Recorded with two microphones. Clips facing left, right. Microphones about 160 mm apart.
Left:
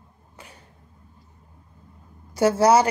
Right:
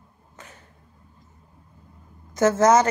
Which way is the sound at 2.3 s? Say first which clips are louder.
Even; 10° left (ahead or behind).